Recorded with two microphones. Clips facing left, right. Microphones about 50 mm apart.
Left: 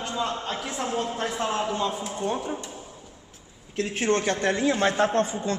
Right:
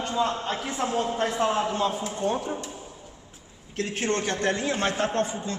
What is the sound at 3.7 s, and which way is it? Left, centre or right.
A man's voice, left.